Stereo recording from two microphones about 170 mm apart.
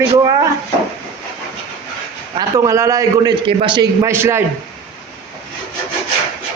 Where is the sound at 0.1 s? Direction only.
20° right (ahead or behind).